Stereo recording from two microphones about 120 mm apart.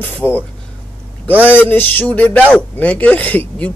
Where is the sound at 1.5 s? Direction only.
15° left (ahead or behind).